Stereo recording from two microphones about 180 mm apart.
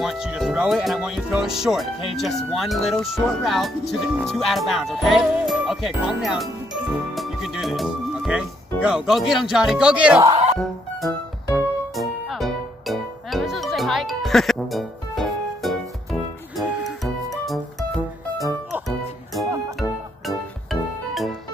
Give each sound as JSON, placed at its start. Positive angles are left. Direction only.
{"t": 0.0, "sound": "speech", "side_deg": 0}
{"t": 10.3, "sound": "music", "side_deg": -40}
{"t": 11.0, "sound": "music", "side_deg": 0}